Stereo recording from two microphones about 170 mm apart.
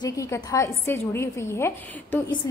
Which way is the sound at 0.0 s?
20° left (ahead or behind).